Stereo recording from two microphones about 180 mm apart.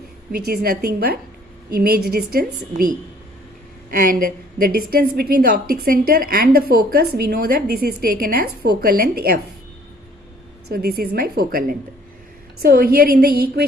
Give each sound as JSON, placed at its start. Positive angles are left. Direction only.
{"t": 0.3, "sound": "a woman's voice", "side_deg": -60}
{"t": 3.8, "sound": "a woman's voice", "side_deg": -50}
{"t": 10.7, "sound": "a woman's voice", "side_deg": -55}